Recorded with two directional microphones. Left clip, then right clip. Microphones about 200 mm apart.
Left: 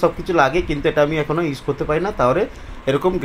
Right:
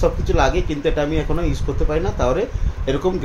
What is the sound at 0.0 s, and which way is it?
Speech, 20° left (ahead or behind).